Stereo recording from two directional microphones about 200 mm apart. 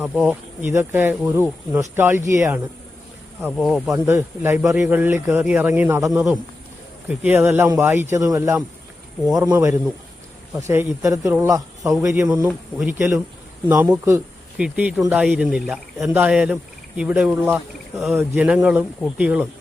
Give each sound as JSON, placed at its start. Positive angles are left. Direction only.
{"t": 0.0, "sound": "speech", "side_deg": -5}
{"t": 3.6, "sound": "a man's voice", "side_deg": 0}
{"t": 3.8, "sound": "a man's voice", "side_deg": -15}
{"t": 17.9, "sound": "a man's voice", "side_deg": 0}